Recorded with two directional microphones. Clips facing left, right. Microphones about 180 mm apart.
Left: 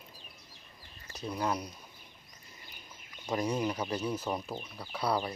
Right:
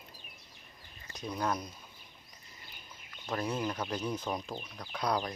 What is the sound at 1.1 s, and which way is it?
Speech, 5° left (ahead or behind).